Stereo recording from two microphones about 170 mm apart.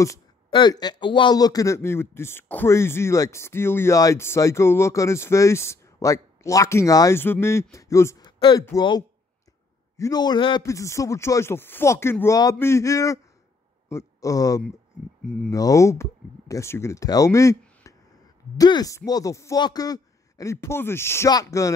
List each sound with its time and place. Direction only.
0.5 s a man's voice: 25° left (ahead or behind)